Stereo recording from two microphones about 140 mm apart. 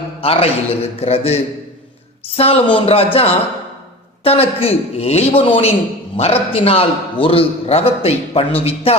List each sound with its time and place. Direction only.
0.2 s a man's voice: 45° left (ahead or behind)